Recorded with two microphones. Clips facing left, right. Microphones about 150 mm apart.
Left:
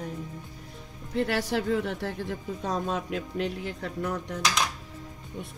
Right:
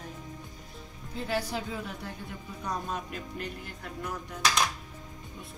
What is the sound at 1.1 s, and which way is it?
A woman's voice, 75° left (ahead or behind).